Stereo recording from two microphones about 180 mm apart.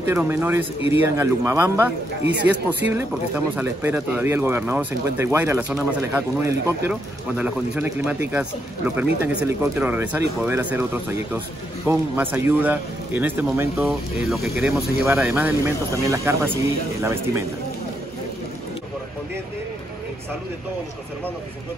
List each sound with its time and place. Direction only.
0.1 s speech: 10° right (ahead or behind)
2.9 s speech: 10° right (ahead or behind)